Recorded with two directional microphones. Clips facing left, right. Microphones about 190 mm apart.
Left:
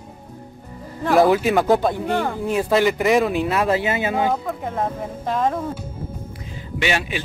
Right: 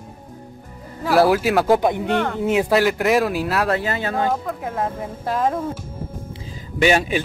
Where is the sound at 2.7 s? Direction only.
Centre (ahead or behind).